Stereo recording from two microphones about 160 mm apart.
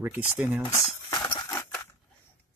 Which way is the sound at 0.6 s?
15° left (ahead or behind).